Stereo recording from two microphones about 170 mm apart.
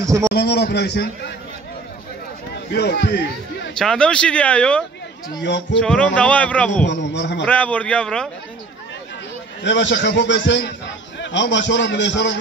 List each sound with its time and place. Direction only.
0.0 s a man's voice: 20° right (ahead or behind)
0.3 s a man's voice: 75° left (ahead or behind)
2.7 s speech: 75° left (ahead or behind)
3.7 s speech: 5° left (ahead or behind)
5.4 s a man's voice: 90° left
5.8 s speech: 5° left (ahead or behind)
6.9 s a man's voice: 90° left
7.4 s speech: 10° left (ahead or behind)
9.6 s a man's voice: 90° left